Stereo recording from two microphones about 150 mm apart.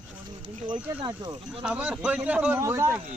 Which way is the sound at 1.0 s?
30° right (ahead or behind).